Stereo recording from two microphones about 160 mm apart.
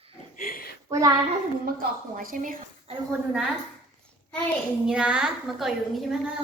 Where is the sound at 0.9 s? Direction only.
20° right (ahead or behind).